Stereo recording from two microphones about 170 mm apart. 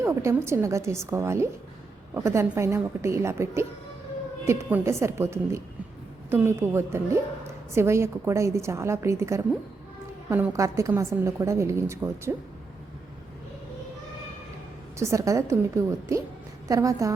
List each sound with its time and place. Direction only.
0.0 s a woman's voice: 15° right (ahead or behind)
14.9 s a woman's voice: 15° right (ahead or behind)